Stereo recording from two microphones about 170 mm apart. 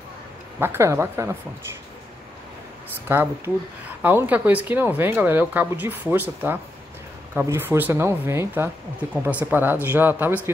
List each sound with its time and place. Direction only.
0.6 s speech: 15° right (ahead or behind)
3.1 s speech: 15° right (ahead or behind)
7.3 s speech: 15° right (ahead or behind)